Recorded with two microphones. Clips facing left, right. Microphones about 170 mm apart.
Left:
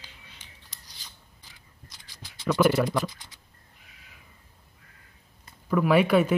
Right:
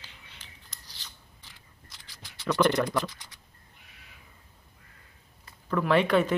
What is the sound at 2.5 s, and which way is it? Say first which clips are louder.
Speech: left 2 dB; 10° left (ahead or behind).